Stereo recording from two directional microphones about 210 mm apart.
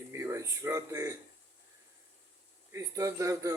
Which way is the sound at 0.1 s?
15° right (ahead or behind).